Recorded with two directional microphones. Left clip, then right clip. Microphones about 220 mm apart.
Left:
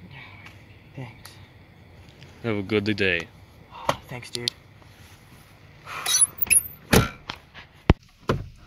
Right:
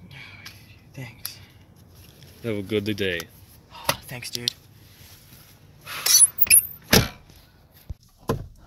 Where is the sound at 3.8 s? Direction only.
25° right (ahead or behind).